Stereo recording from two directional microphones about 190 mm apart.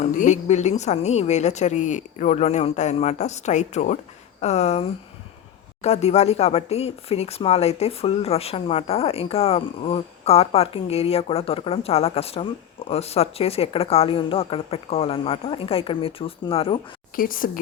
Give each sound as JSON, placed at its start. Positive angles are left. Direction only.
{"t": 0.0, "sound": "speech", "side_deg": 40}
{"t": 17.2, "sound": "speech", "side_deg": 45}